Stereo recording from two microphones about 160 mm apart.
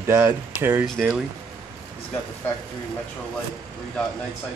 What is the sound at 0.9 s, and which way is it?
Speech, 5° left (ahead or behind).